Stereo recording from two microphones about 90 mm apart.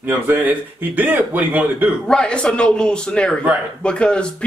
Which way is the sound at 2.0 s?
10° left (ahead or behind).